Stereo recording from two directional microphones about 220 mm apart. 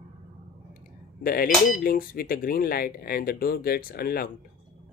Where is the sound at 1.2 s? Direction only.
40° left (ahead or behind).